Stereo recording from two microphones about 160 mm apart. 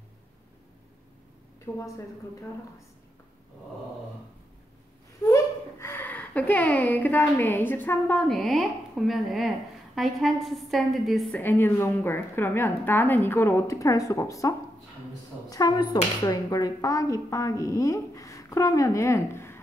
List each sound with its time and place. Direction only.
1.7 s a woman's voice: 15° left (ahead or behind)
5.2 s a woman's voice: 15° left (ahead or behind); by 11.4 s centre (ahead or behind)
11.4 s a woman's voice: 15° left (ahead or behind)
15.5 s speech: 25° left (ahead or behind)